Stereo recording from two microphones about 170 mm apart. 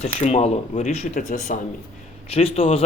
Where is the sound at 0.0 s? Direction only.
40° left (ahead or behind).